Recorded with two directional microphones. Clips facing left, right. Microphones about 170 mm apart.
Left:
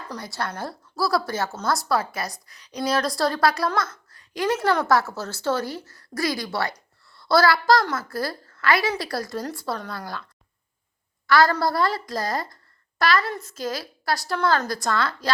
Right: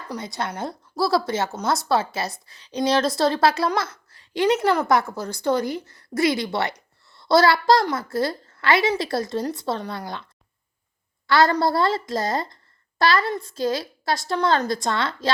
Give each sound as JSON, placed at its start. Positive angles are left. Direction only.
{"t": 0.1, "sound": "a woman's voice", "side_deg": -20}
{"t": 11.3, "sound": "speech", "side_deg": -25}